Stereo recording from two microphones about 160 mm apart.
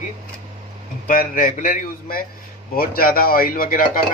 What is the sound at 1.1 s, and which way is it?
Speech, 60° left (ahead or behind).